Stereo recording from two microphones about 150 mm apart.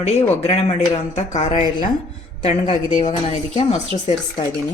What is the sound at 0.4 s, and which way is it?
A woman's voice, 45° left (ahead or behind).